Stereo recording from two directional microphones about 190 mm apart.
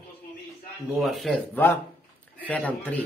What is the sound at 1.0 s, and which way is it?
A man's voice, centre (ahead or behind).